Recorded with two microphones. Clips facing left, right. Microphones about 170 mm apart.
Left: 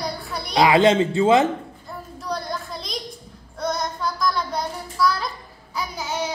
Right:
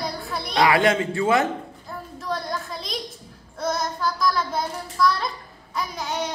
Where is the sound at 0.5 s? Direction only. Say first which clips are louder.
Left 3 dB; 20° left (ahead or behind).